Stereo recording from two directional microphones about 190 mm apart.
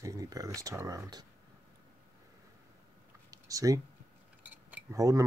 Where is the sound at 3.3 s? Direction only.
20° right (ahead or behind).